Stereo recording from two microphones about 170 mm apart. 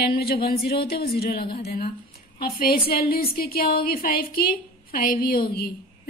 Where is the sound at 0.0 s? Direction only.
70° left (ahead or behind).